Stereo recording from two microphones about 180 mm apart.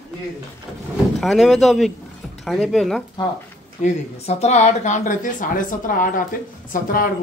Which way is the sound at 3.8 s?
35° left (ahead or behind).